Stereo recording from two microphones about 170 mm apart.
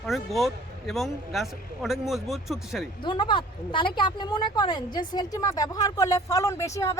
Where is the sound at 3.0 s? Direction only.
30° left (ahead or behind).